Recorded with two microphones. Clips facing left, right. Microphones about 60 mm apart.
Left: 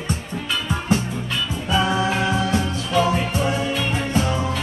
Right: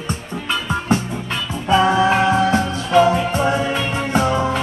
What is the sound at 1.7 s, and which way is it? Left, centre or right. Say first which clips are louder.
Music: right 6 dB; right.